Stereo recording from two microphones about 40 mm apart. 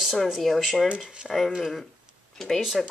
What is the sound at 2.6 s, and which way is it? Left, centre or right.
Speech, centre.